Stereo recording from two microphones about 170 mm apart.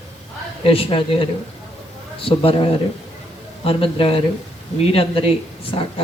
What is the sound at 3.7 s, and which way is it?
Speech, 30° left (ahead or behind).